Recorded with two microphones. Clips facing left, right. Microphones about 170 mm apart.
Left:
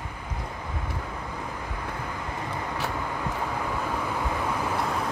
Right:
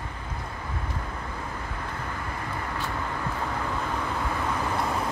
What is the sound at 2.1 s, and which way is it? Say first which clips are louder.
Vehicle: left 1 dB; 20° left (ahead or behind).